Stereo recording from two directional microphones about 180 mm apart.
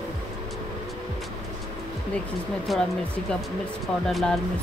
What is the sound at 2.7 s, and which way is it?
Speech, centre (ahead or behind).